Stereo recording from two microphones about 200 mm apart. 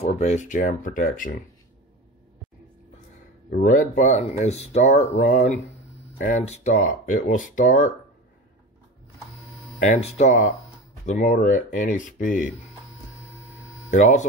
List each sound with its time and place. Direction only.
0.0 s speech: 35° left (ahead or behind)
3.4 s speech: 45° left (ahead or behind)
9.8 s speech: 35° left (ahead or behind)
13.8 s speech: 35° left (ahead or behind)